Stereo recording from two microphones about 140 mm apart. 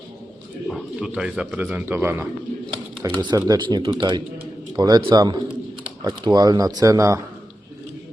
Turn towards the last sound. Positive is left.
turn(degrees=-20)  # may be behind; listen again after turning